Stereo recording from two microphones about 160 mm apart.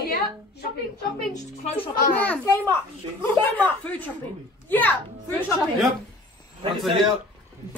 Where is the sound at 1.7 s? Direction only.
35° left (ahead or behind).